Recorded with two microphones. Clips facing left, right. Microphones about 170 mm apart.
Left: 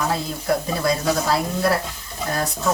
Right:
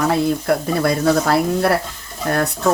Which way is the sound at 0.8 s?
60° right (ahead or behind).